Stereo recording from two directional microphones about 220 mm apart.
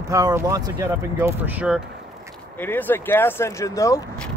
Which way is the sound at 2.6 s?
10° left (ahead or behind).